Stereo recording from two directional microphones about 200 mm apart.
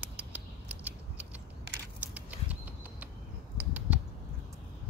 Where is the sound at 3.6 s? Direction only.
5° right (ahead or behind).